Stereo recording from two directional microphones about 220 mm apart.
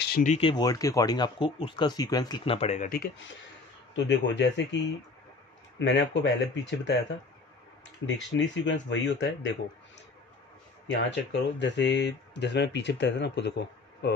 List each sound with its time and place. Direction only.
0.0 s speech: 40° left (ahead or behind)
3.9 s speech: 55° left (ahead or behind)
8.0 s speech: 55° left (ahead or behind)
10.9 s speech: 55° left (ahead or behind)